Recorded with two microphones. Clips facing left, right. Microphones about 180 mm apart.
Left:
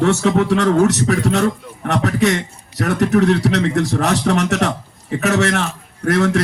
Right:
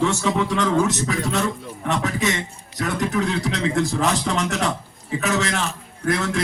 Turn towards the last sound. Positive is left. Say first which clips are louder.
# left 7 dB
turn(degrees=65)  # may be behind; listen again after turning